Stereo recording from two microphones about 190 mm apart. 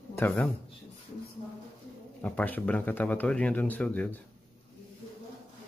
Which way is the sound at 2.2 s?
10° left (ahead or behind).